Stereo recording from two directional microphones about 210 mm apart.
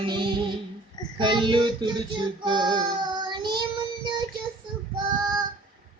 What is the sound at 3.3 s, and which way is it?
Child singing, 20° right (ahead or behind).